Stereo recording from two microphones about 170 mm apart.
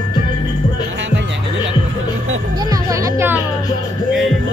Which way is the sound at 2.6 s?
20° right (ahead or behind).